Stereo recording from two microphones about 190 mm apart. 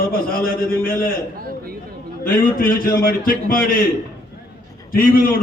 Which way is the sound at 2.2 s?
50° left (ahead or behind).